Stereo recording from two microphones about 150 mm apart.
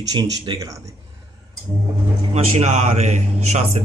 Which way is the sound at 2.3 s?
50° right (ahead or behind).